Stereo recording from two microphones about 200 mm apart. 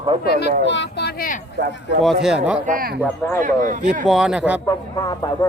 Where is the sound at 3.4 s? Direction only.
40° right (ahead or behind).